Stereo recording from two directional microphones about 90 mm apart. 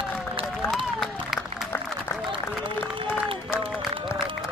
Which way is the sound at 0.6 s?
25° left (ahead or behind).